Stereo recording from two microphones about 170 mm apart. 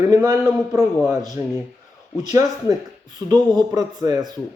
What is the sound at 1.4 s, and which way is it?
Speech, 20° right (ahead or behind).